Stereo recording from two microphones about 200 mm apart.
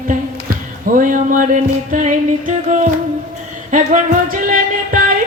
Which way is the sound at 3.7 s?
40° right (ahead or behind).